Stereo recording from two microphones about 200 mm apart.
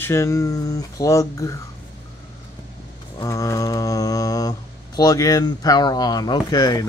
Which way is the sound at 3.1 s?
15° left (ahead or behind).